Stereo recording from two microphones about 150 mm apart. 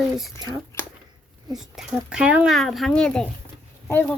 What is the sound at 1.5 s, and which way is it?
Speech, 5° right (ahead or behind).